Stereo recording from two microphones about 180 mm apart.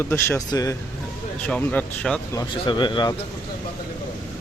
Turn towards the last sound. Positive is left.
turn(degrees=25)  # may be behind; listen again after turning